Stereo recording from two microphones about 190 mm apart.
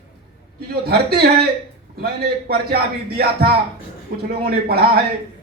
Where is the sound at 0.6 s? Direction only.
55° right (ahead or behind).